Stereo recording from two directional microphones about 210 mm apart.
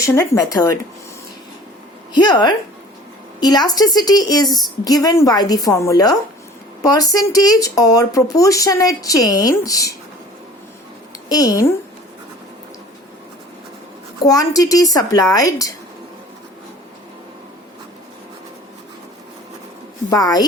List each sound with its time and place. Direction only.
0.0 s speech: 15° left (ahead or behind)
2.1 s a woman's voice: 20° left (ahead or behind)
11.3 s speech: 15° left (ahead or behind)
14.3 s speech: 15° left (ahead or behind)
20.1 s speech: 20° left (ahead or behind)